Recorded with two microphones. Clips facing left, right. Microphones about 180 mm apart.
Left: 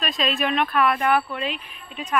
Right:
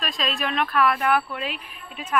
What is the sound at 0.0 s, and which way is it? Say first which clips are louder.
Speech: left 3 dB; centre (ahead or behind).